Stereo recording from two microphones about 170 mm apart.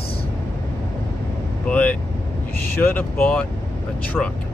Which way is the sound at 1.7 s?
10° left (ahead or behind).